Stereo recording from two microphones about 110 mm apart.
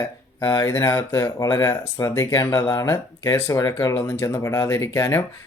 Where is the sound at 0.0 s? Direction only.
20° left (ahead or behind).